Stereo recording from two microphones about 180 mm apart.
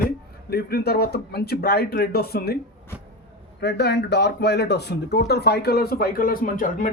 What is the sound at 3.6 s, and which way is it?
A man's voice, 70° left (ahead or behind).